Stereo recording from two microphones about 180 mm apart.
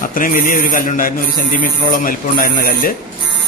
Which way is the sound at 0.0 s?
50° left (ahead or behind).